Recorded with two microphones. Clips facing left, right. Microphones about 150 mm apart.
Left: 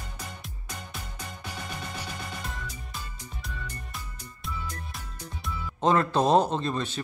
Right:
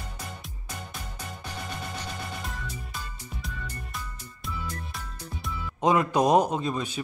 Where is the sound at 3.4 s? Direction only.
Centre (ahead or behind).